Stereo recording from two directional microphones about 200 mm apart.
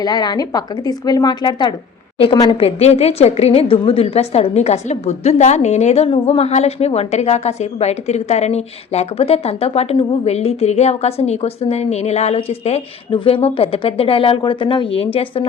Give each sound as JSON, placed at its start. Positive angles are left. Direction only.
{"t": 0.0, "sound": "a woman's voice", "side_deg": 20}